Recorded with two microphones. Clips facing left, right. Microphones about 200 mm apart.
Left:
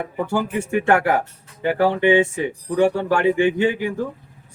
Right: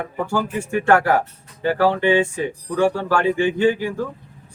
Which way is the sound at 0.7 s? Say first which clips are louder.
Right 1 dB; 20° left (ahead or behind).